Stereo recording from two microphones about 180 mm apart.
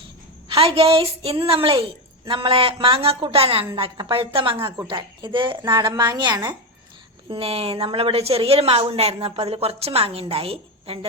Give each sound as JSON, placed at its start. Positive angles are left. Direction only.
{"t": 0.4, "sound": "a woman's voice", "side_deg": -30}